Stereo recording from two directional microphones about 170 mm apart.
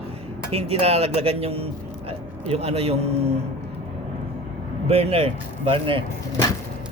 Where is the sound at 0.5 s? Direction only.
35° right (ahead or behind).